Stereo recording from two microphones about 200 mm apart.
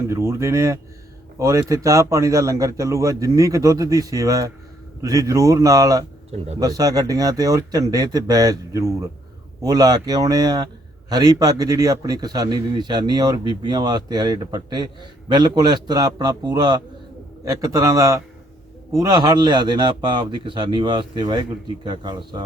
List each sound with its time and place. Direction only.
0.1 s a man's voice: 15° right (ahead or behind)